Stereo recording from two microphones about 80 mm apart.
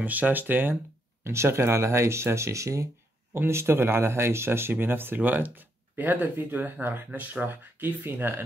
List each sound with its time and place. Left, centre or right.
0.0 s speech: right
1.2 s speech: right